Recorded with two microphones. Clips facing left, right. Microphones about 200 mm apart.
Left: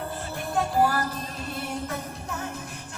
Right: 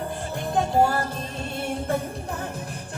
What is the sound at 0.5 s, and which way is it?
Music, 25° right (ahead or behind).